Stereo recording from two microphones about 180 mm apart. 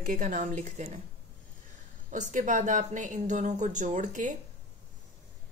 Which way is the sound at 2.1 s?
45° right (ahead or behind).